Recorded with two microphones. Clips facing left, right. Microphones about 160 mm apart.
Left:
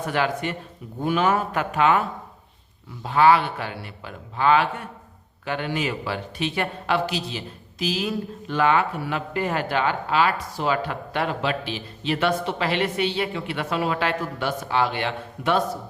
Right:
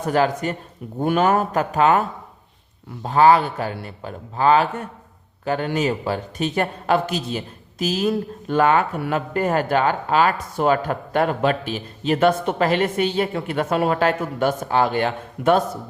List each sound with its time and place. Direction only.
0.0 s a man's voice: 40° right (ahead or behind)